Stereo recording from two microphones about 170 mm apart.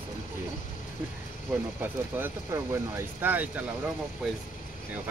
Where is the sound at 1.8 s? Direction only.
15° right (ahead or behind).